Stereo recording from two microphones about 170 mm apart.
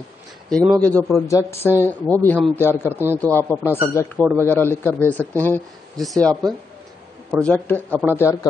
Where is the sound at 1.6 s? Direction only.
15° left (ahead or behind).